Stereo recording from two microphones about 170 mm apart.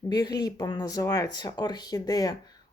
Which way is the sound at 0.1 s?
25° left (ahead or behind).